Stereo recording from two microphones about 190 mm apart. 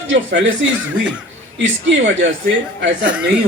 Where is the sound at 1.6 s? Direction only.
75° right (ahead or behind).